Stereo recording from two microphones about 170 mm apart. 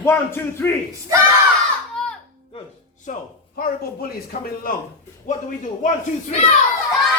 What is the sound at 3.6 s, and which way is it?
Speech, 60° left (ahead or behind).